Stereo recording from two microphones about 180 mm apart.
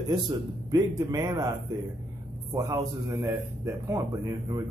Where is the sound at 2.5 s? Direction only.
15° right (ahead or behind).